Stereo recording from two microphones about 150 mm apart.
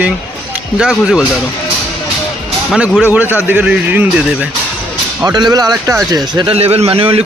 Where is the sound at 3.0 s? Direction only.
10° right (ahead or behind).